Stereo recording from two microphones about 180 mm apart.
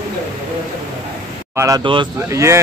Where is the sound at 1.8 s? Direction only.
25° right (ahead or behind).